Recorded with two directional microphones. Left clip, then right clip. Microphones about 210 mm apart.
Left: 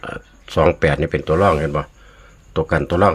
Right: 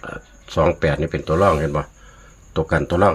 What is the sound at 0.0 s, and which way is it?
Speech, 15° left (ahead or behind).